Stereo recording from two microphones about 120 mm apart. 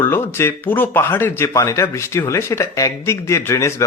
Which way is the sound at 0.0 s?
20° left (ahead or behind).